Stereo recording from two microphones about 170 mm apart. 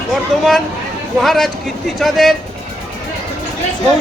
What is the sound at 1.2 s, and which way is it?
Speech, centre (ahead or behind).